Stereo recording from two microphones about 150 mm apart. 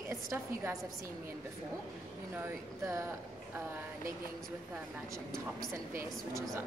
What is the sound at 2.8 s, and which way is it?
Speech, 20° right (ahead or behind).